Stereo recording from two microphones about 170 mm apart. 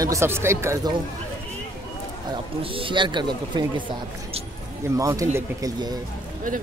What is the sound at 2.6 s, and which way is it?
Speech, 30° right (ahead or behind).